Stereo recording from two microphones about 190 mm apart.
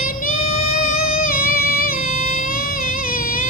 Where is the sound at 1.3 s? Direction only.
50° left (ahead or behind).